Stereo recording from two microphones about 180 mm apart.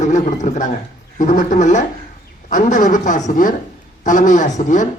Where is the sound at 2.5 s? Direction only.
45° left (ahead or behind).